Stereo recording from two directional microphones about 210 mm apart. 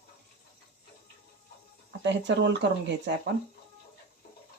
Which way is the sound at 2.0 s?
55° right (ahead or behind).